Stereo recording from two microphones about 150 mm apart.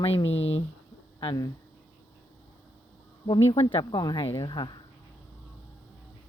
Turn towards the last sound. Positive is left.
turn(degrees=30)  # may be behind; listen again after turning